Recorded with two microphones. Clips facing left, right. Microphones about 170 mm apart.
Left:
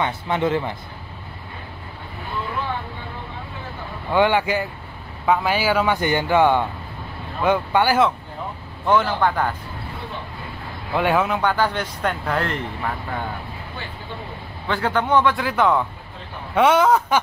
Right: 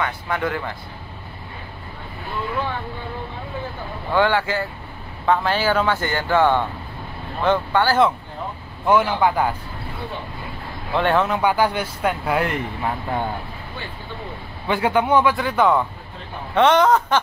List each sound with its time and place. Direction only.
0.0 s speech: 25° left (ahead or behind)
4.1 s a man's voice: 15° left (ahead or behind)
8.8 s speech: 10° right (ahead or behind)
10.9 s a man's voice: 10° left (ahead or behind)
11.4 s speech: 10° right (ahead or behind)
14.7 s a man's voice: 10° right (ahead or behind); by 17.2 s 10° left (ahead or behind)